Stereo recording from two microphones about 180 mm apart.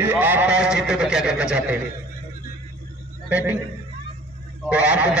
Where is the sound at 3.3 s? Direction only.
10° right (ahead or behind).